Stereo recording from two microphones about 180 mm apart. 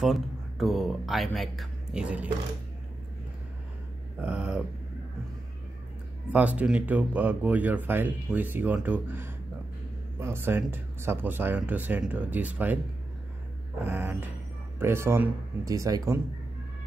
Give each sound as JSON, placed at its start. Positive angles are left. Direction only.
{"t": 0.0, "sound": "speech", "side_deg": 0}
{"t": 4.2, "sound": "speech", "side_deg": -5}
{"t": 6.3, "sound": "speech", "side_deg": -10}
{"t": 13.8, "sound": "speech", "side_deg": -10}